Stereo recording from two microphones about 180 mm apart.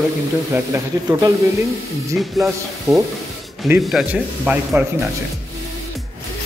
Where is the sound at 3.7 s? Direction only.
5° right (ahead or behind).